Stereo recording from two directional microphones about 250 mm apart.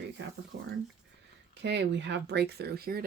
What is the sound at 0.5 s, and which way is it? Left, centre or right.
Speech, right.